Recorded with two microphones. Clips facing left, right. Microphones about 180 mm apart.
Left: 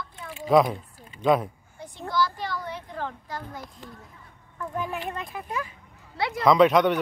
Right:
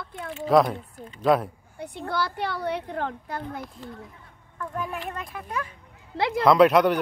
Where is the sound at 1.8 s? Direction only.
65° right (ahead or behind).